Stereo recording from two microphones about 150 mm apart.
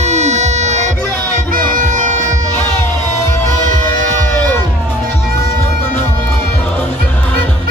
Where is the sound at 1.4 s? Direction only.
65° right (ahead or behind).